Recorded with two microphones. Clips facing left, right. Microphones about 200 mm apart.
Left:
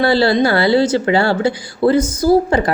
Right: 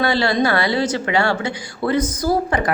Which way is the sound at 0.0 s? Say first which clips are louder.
Left 5 dB; 30° left (ahead or behind).